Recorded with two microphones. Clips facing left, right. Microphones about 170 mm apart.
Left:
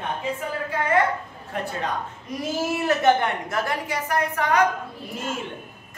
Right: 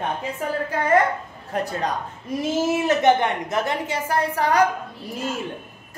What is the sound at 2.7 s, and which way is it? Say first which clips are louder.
A woman's voice: right 1 dB; 20° right (ahead or behind).